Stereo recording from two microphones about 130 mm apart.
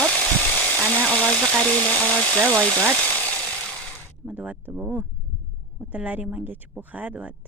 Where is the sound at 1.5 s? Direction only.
25° right (ahead or behind).